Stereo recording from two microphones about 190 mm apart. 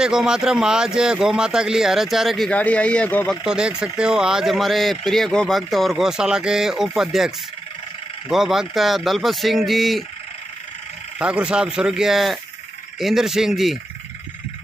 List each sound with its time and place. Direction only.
0.0 s speech: 5° right (ahead or behind)
3.4 s speech: 5° right (ahead or behind)
11.1 s speech: 5° right (ahead or behind)